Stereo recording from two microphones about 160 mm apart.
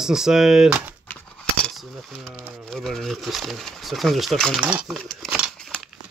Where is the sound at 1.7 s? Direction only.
Centre (ahead or behind).